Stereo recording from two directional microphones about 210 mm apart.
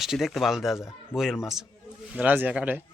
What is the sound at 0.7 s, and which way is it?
Speech, 15° left (ahead or behind).